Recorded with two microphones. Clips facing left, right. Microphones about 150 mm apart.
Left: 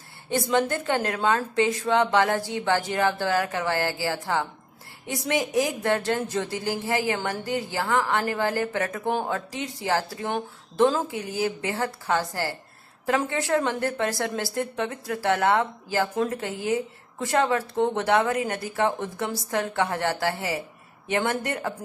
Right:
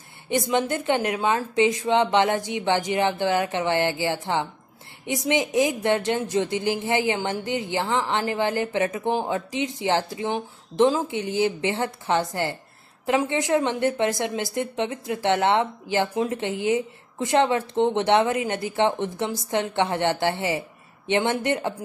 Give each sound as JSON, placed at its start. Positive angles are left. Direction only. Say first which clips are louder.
{"t": 0.3, "sound": "a woman's voice", "louder": "even", "side_deg": -20}